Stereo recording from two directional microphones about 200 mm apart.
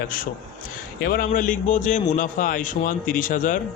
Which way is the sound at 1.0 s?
45° left (ahead or behind).